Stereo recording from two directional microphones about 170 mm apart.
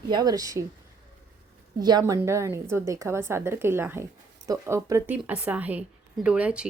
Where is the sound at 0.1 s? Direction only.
20° right (ahead or behind).